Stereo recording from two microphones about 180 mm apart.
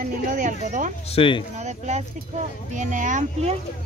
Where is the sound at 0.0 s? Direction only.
50° right (ahead or behind).